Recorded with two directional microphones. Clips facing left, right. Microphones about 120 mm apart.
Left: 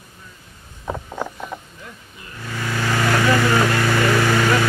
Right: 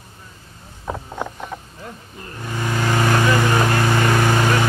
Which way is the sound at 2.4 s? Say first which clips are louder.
Right 2 dB; 20° right (ahead or behind).